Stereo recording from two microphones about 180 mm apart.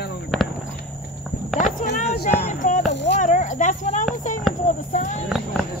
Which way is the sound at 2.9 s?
75° left (ahead or behind).